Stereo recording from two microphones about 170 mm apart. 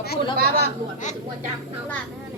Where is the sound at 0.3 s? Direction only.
60° right (ahead or behind).